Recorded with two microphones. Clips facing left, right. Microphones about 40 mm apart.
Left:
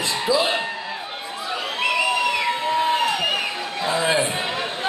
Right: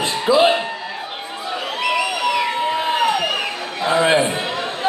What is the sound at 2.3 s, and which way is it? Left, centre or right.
Crowd, centre.